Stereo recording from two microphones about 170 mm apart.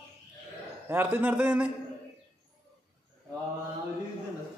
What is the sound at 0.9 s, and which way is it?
Speech, 10° right (ahead or behind).